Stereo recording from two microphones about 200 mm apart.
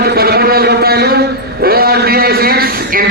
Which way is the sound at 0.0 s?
50° right (ahead or behind).